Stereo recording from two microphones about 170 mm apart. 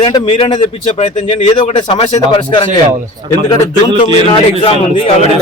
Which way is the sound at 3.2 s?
25° right (ahead or behind).